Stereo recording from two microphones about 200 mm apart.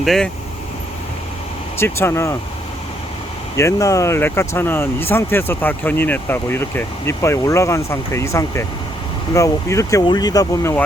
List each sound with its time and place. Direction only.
0.0 s speech: centre (ahead or behind)
1.8 s speech: 15° left (ahead or behind)
3.6 s speech: 15° left (ahead or behind)